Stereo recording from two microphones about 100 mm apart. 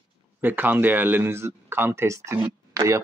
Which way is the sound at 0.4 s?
20° right (ahead or behind).